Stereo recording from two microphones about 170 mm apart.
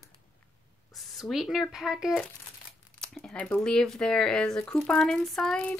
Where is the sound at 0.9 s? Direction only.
Centre (ahead or behind).